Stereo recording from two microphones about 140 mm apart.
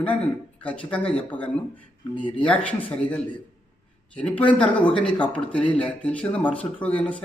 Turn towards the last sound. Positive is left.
turn(degrees=10)  # may be behind; listen again after turning